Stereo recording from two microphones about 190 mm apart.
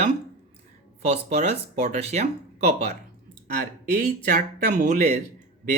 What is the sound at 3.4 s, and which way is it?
Speech, 55° right (ahead or behind).